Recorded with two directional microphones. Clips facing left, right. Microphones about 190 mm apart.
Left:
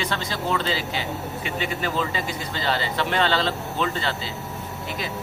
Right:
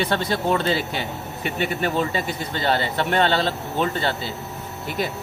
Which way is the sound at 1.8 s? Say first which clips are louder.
Right 3 dB; 55° right (ahead or behind).